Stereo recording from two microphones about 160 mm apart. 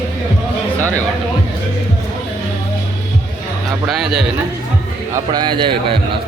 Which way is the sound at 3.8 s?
Centre (ahead or behind).